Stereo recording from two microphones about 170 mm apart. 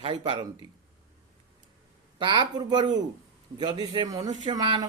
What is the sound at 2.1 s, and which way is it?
Speech, 25° right (ahead or behind).